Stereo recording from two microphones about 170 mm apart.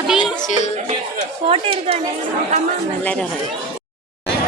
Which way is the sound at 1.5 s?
35° right (ahead or behind).